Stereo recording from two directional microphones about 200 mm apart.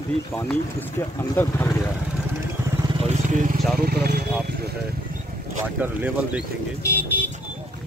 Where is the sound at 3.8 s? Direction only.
55° right (ahead or behind).